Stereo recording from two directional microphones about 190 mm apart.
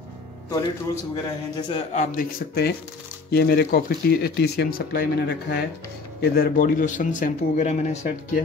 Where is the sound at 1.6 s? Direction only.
25° left (ahead or behind).